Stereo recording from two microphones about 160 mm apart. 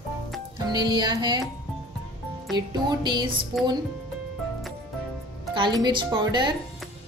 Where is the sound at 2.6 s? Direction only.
25° right (ahead or behind).